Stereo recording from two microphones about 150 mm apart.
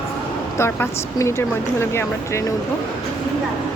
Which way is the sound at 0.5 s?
15° left (ahead or behind).